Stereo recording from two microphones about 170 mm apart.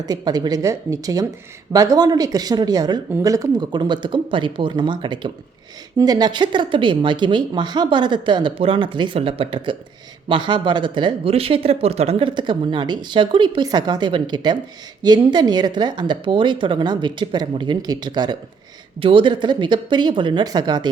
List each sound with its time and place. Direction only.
0.0 s speech: 25° right (ahead or behind)